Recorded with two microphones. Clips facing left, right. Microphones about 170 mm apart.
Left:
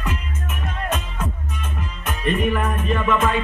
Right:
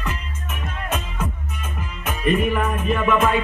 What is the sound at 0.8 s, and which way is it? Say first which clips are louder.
Music: even; 5° right (ahead or behind).